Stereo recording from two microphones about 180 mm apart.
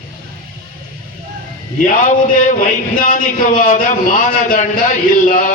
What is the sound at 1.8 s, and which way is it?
A man's voice, 45° left (ahead or behind).